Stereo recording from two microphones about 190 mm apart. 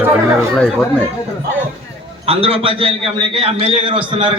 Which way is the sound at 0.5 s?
5° left (ahead or behind).